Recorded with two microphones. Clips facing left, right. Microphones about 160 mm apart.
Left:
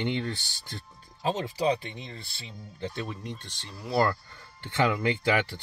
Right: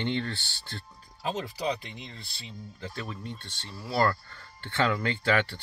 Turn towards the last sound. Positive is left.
turn(degrees=15)  # may be behind; listen again after turning